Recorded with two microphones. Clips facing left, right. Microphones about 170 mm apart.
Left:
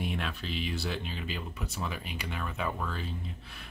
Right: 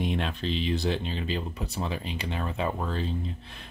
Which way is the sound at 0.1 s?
30° right (ahead or behind).